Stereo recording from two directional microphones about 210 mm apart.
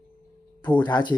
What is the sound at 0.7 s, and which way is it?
Speech, 20° left (ahead or behind).